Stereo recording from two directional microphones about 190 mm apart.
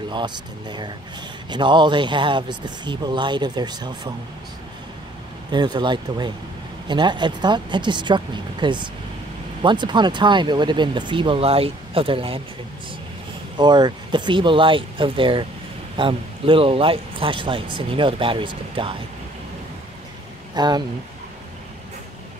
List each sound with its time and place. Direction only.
0.1 s speech: 25° right (ahead or behind)
5.5 s speech: 25° right (ahead or behind)
13.6 s speech: 20° right (ahead or behind)
20.5 s speech: 20° right (ahead or behind)